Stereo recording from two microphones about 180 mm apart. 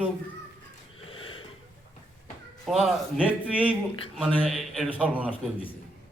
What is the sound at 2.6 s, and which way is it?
A man's voice, centre (ahead or behind).